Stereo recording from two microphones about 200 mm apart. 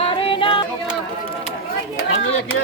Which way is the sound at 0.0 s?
25° left (ahead or behind).